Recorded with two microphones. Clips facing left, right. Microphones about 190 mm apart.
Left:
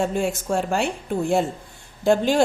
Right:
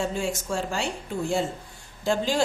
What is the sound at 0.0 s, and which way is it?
Speech, 55° left (ahead or behind).